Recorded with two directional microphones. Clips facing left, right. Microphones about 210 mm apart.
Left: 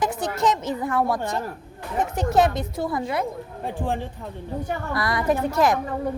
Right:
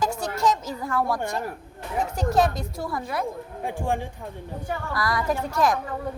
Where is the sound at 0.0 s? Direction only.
20° left (ahead or behind).